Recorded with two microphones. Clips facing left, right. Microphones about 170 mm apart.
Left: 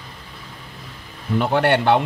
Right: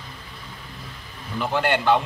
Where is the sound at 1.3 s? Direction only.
60° left (ahead or behind).